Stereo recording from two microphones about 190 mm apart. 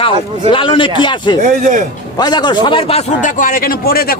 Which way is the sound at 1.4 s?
40° right (ahead or behind).